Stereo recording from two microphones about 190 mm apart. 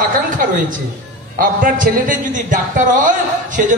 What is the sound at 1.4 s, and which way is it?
A man's voice, 45° right (ahead or behind).